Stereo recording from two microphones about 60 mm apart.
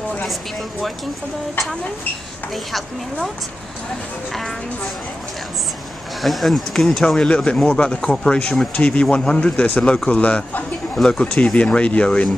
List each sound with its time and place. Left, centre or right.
0.3 s speech: centre
2.5 s speech: centre
4.3 s speech: centre
6.2 s a man's voice: centre